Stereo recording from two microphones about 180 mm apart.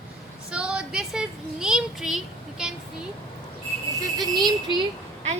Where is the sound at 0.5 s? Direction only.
5° right (ahead or behind).